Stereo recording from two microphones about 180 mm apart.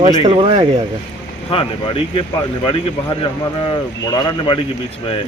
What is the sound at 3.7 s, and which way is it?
Speech, 25° left (ahead or behind).